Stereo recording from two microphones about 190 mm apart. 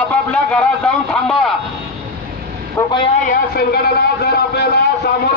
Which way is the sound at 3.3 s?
55° left (ahead or behind).